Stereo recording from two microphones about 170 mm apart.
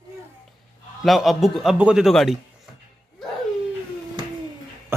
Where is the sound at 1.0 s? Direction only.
Centre (ahead or behind).